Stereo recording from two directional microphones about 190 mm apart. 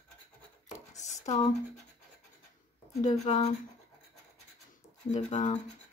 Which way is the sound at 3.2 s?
35° left (ahead or behind).